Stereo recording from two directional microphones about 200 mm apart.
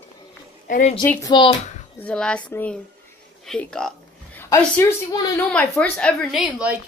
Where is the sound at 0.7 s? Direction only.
35° left (ahead or behind).